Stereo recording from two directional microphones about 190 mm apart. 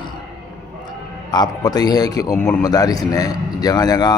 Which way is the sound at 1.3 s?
20° left (ahead or behind).